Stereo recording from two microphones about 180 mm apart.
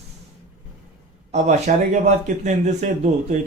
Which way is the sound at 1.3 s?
40° right (ahead or behind).